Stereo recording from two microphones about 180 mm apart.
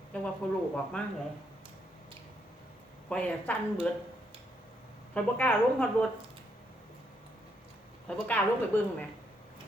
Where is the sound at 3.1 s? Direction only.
5° left (ahead or behind).